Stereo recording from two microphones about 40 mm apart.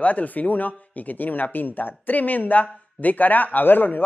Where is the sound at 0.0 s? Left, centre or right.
Left.